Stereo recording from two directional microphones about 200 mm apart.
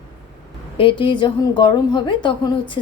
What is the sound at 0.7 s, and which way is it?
A woman's voice, 25° left (ahead or behind).